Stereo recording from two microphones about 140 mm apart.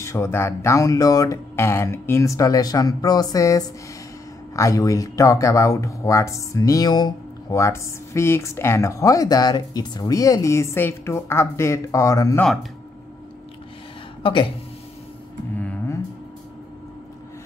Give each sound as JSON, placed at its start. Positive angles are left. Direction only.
{"t": 0.0, "sound": "speech", "side_deg": 20}
{"t": 14.2, "sound": "speech", "side_deg": 35}